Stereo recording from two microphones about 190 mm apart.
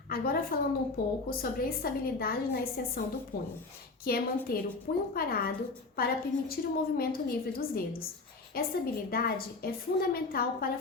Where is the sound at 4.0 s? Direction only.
50° left (ahead or behind).